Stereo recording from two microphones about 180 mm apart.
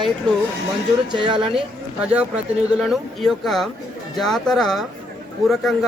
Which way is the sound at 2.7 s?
Centre (ahead or behind).